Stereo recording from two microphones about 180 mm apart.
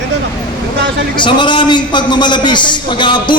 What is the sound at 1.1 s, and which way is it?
A man's voice, 25° left (ahead or behind).